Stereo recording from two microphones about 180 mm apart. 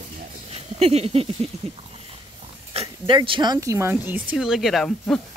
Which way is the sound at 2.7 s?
30° right (ahead or behind).